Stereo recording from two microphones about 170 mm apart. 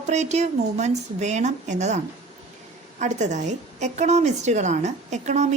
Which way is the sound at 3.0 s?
45° right (ahead or behind).